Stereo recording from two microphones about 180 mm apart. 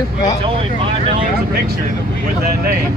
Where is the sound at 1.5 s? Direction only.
60° right (ahead or behind).